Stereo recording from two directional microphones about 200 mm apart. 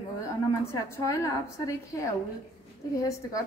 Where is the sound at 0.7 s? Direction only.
15° left (ahead or behind).